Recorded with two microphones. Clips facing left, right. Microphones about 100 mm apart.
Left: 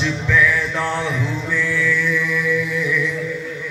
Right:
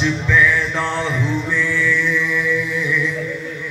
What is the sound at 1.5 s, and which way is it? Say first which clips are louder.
Mantra: left 2 dB; 45° left (ahead or behind).